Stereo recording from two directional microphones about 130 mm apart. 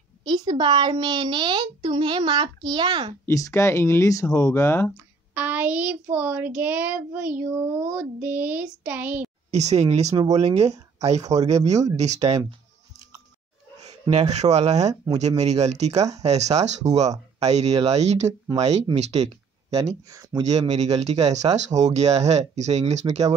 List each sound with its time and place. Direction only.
0.2 s a woman's voice: 35° right (ahead or behind)
3.3 s speech: 25° left (ahead or behind)
5.3 s a child's voice: 10° right (ahead or behind)
9.5 s speech: 60° right (ahead or behind)
11.7 s speech: 25° right (ahead or behind)
12.0 s speech: 60° right (ahead or behind)
14.1 s speech: 55° right (ahead or behind)
19.7 s speech: 25° right (ahead or behind)
20.4 s speech: 60° right (ahead or behind)